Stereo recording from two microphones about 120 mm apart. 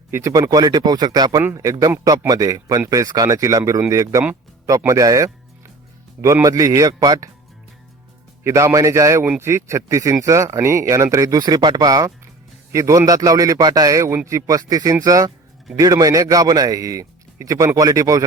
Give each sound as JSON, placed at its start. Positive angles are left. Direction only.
{"t": 0.1, "sound": "speech", "side_deg": -25}
{"t": 1.4, "sound": "speech", "side_deg": -25}
{"t": 8.4, "sound": "speech", "side_deg": -25}